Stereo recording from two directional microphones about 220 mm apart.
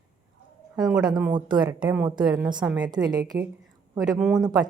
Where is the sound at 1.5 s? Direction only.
20° right (ahead or behind).